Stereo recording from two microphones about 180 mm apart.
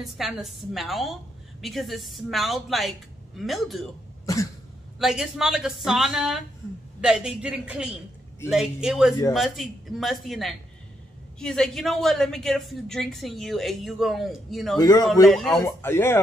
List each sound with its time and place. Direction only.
0.0 s a woman's voice: centre (ahead or behind)
4.9 s a woman's voice: centre (ahead or behind)
14.8 s a man's voice: 20° left (ahead or behind)
15.2 s a woman's voice: centre (ahead or behind)
15.6 s speech: 15° left (ahead or behind)